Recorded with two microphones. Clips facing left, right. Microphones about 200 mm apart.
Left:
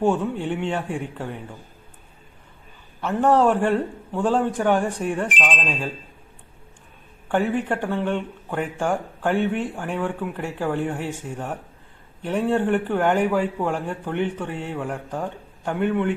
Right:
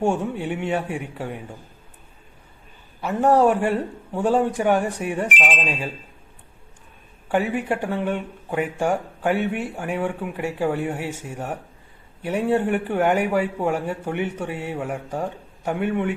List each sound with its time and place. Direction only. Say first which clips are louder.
0.0 s speech: left 1 dB; 10° right (ahead or behind)
3.0 s speech: right 1 dB; 10° right (ahead or behind)
7.3 s speech: even; 10° right (ahead or behind)